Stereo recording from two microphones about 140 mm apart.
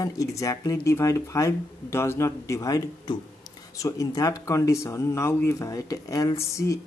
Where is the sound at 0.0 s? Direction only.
25° left (ahead or behind).